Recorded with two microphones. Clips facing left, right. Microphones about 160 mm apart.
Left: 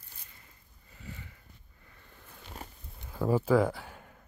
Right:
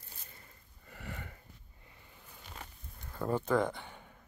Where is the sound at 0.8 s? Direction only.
65° right (ahead or behind).